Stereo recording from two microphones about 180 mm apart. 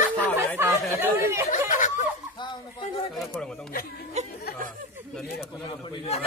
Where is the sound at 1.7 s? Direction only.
45° left (ahead or behind).